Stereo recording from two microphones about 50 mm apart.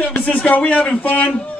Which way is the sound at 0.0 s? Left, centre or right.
Left.